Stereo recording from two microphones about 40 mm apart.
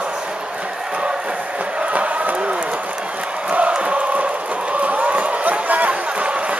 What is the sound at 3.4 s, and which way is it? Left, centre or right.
Chant, right.